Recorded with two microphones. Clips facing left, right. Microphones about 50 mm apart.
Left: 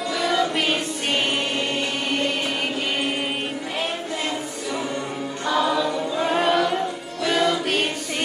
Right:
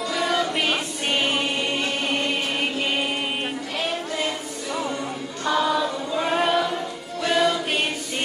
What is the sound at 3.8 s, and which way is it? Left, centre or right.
Music, centre.